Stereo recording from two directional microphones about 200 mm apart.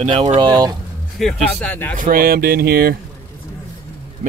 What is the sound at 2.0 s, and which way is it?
Speech, 45° right (ahead or behind).